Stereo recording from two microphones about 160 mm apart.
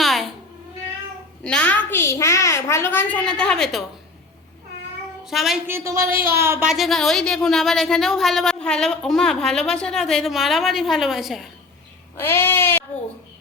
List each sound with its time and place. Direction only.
0.0 s cat: centre (ahead or behind)
1.5 s a woman's voice: 10° left (ahead or behind)
5.2 s a woman's voice: centre (ahead or behind)
5.6 s speech: 15° right (ahead or behind)
6.7 s a woman's voice: centre (ahead or behind)
12.1 s a woman's voice: 15° left (ahead or behind)